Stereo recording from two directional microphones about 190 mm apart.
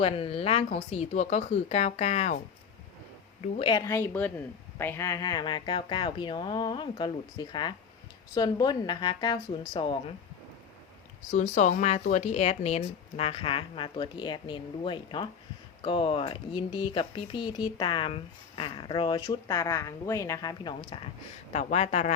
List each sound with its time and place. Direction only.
0.0 s speech: 30° left (ahead or behind)
3.4 s speech: 25° left (ahead or behind)
11.5 s speech: 40° left (ahead or behind)
21.5 s speech: 35° left (ahead or behind)